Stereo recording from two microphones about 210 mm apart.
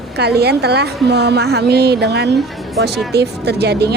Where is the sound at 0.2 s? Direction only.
50° right (ahead or behind).